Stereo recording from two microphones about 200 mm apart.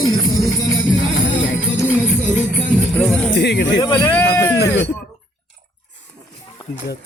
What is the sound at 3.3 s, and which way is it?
Speech, 55° left (ahead or behind).